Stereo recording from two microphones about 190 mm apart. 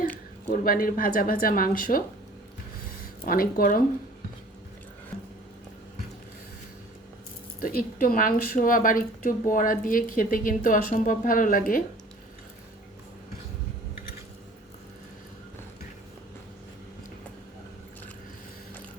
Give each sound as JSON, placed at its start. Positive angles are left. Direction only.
{"t": 0.4, "sound": "speech", "side_deg": 50}
{"t": 2.8, "sound": "a sound", "side_deg": 50}
{"t": 7.6, "sound": "speech", "side_deg": 50}